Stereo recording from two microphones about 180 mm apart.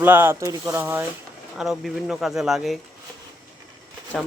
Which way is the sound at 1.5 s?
Centre (ahead or behind).